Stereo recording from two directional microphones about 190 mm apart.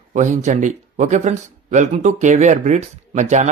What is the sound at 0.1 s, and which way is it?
Speech, 40° right (ahead or behind).